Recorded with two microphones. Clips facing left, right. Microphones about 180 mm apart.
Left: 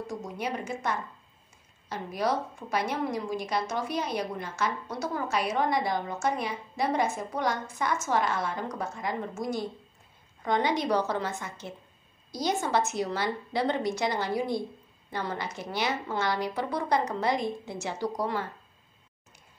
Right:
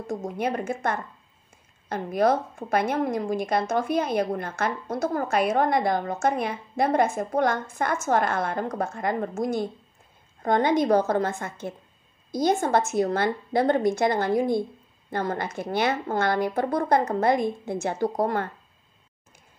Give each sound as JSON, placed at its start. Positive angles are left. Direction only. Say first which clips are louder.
{"t": 0.0, "sound": "a woman's voice", "louder": "right 6 dB", "side_deg": -50}